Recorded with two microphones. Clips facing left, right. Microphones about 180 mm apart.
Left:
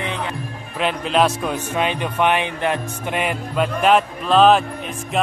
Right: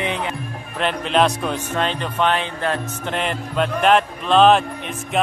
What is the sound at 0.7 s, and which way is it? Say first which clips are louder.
A man's voice: even; 5° left (ahead or behind).